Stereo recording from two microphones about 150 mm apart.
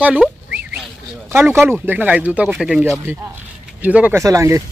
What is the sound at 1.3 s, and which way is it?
Speech, 15° right (ahead or behind).